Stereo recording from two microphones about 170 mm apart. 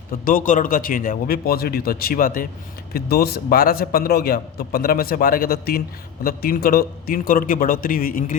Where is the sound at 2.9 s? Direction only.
65° left (ahead or behind).